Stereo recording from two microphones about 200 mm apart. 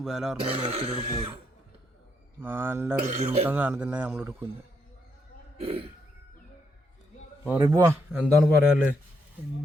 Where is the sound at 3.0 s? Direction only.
35° right (ahead or behind).